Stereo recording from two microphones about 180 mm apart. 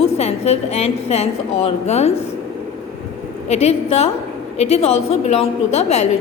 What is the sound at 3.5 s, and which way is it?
A woman's voice, 35° left (ahead or behind).